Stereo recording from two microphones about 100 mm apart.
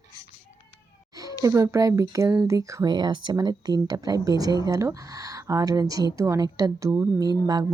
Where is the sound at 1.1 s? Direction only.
35° right (ahead or behind).